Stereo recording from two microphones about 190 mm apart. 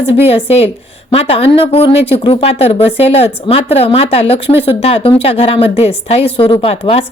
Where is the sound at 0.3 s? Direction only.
30° left (ahead or behind).